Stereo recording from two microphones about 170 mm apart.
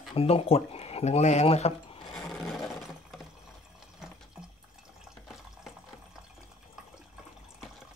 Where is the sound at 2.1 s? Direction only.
Centre (ahead or behind).